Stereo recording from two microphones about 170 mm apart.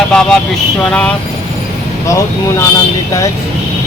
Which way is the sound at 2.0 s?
15° left (ahead or behind).